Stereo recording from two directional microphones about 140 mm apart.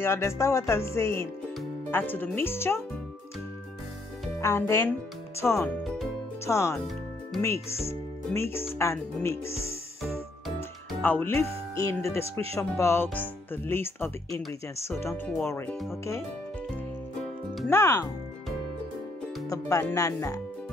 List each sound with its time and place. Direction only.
0.0 s music: 20° left (ahead or behind)
1.9 s speech: 15° left (ahead or behind)
4.4 s speech: 20° left (ahead or behind)
5.4 s music: 20° left (ahead or behind)
11.0 s speech: 15° left (ahead or behind)
17.6 s music: 20° left (ahead or behind)
19.5 s music: 20° left (ahead or behind)